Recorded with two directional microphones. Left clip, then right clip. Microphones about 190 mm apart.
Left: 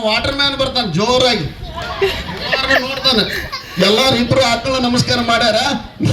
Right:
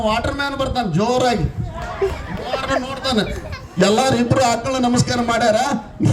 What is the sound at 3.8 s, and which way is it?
A man's voice, 55° right (ahead or behind).